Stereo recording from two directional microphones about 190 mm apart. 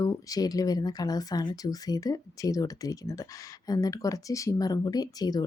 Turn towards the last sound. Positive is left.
turn(degrees=20)  # may be behind; listen again after turning